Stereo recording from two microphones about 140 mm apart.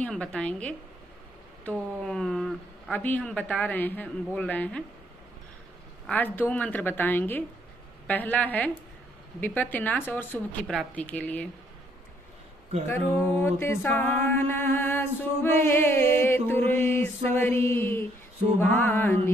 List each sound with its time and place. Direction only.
0.0 s music: 10° left (ahead or behind)
1.6 s a woman's voice: 5° left (ahead or behind)
3.0 s music: 10° left (ahead or behind)
6.0 s music: 10° left (ahead or behind)
12.8 s music: 15° left (ahead or behind)